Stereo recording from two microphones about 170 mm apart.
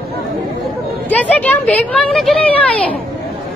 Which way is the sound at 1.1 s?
10° left (ahead or behind).